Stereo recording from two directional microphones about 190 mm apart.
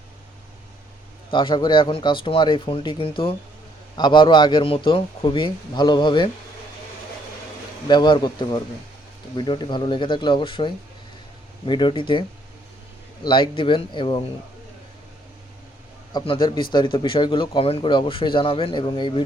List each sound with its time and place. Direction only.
1.3 s speech: 25° left (ahead or behind)
7.9 s speech: 25° left (ahead or behind)
13.2 s speech: 25° left (ahead or behind)
16.1 s speech: 25° left (ahead or behind)